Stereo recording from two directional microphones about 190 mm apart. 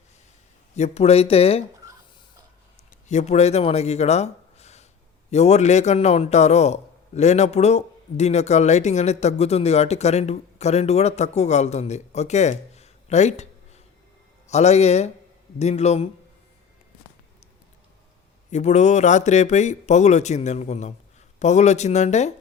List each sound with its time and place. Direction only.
0.8 s a man's voice: 35° left (ahead or behind)
2.9 s a man's voice: 40° left (ahead or behind)
18.5 s a man's voice: 35° left (ahead or behind)